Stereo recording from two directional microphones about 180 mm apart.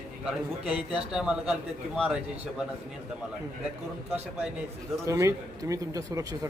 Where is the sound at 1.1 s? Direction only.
5° right (ahead or behind).